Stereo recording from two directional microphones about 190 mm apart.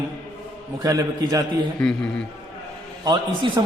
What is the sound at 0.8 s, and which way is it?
Speech, 20° right (ahead or behind).